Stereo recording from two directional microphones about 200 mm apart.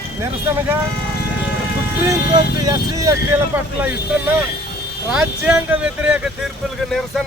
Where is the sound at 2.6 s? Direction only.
20° right (ahead or behind).